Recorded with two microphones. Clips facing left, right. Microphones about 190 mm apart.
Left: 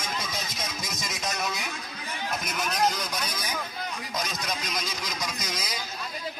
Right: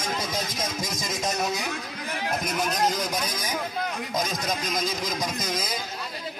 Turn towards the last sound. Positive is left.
turn(degrees=-50)  # may be behind; listen again after turning